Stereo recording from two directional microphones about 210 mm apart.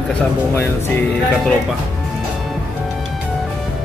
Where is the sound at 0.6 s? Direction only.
10° left (ahead or behind).